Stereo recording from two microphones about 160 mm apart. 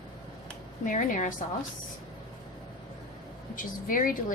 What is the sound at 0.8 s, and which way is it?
Speech, 55° left (ahead or behind).